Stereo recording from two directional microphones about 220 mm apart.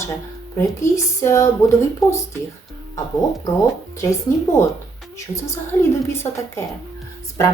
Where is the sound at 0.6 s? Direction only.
15° left (ahead or behind).